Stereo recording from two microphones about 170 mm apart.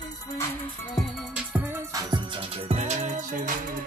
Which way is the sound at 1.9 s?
25° right (ahead or behind).